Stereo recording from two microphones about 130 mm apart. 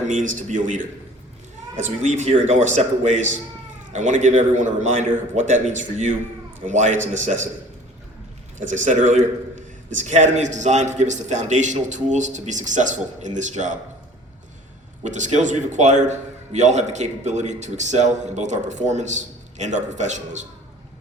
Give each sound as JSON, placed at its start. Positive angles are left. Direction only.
{"t": 0.1, "sound": "a man's voice", "side_deg": -80}
{"t": 1.8, "sound": "a man's voice", "side_deg": -60}
{"t": 8.6, "sound": "a man's voice", "side_deg": -70}
{"t": 15.0, "sound": "a man's voice", "side_deg": -65}